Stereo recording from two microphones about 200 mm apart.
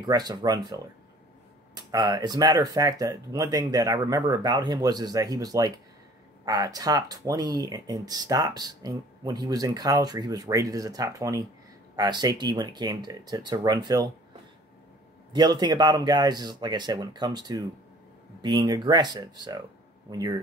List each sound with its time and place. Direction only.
0.0 s speech: 20° right (ahead or behind)
1.8 s speech: 20° right (ahead or behind)
15.3 s speech: 20° right (ahead or behind)